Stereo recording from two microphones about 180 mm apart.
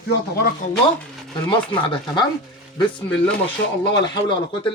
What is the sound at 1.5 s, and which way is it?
Speech, 25° left (ahead or behind).